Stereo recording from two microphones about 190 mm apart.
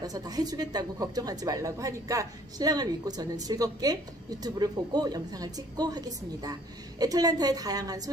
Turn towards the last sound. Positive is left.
turn(degrees=-20)  # may be behind; listen again after turning